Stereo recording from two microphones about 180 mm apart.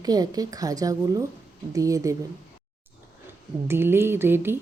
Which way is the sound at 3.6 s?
15° right (ahead or behind).